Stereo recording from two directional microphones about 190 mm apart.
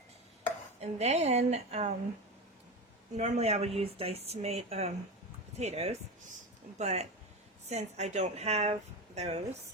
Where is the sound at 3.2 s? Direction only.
35° right (ahead or behind).